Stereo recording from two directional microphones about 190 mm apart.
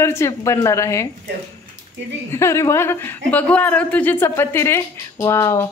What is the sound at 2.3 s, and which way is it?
Speech, 15° left (ahead or behind).